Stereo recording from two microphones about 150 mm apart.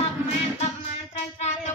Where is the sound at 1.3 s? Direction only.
50° left (ahead or behind).